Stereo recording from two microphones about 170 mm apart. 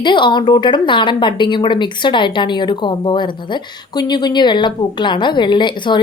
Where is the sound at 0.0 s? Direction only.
25° left (ahead or behind).